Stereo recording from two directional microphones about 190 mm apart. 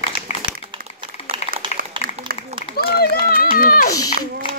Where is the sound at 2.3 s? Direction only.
50° right (ahead or behind).